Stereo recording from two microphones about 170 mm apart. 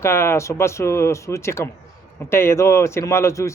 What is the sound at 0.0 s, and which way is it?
Speech, 15° left (ahead or behind).